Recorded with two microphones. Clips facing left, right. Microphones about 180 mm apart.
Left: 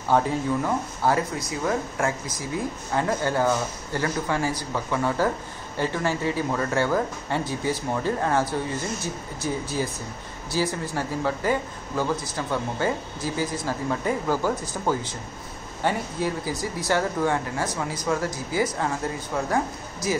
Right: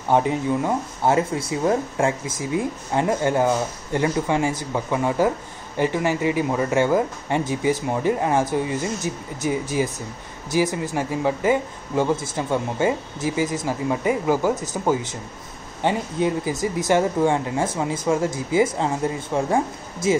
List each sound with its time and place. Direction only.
0.1 s speech: 20° right (ahead or behind)
14.5 s speech: 45° right (ahead or behind)
15.8 s speech: 20° right (ahead or behind)